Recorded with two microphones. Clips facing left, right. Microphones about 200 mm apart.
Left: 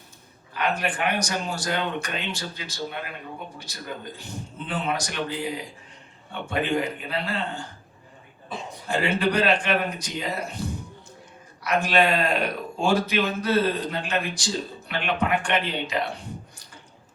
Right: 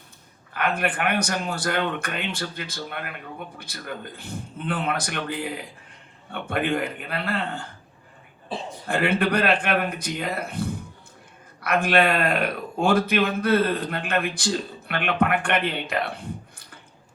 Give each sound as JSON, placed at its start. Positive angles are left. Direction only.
{"t": 0.5, "sound": "speech", "side_deg": -55}
{"t": 8.5, "sound": "a man's voice", "side_deg": -30}
{"t": 8.9, "sound": "speech", "side_deg": -55}